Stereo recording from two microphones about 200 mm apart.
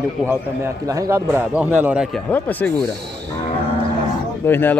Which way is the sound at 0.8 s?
15° right (ahead or behind).